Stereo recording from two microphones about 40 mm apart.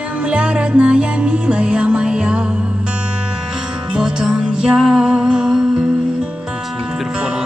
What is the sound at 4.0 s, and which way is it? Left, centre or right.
Music, centre.